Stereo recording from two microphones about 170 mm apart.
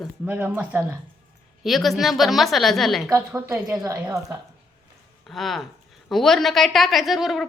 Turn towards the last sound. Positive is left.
turn(degrees=0)  # may be behind; listen again after turning